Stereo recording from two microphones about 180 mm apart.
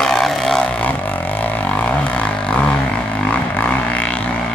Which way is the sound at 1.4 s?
5° left (ahead or behind).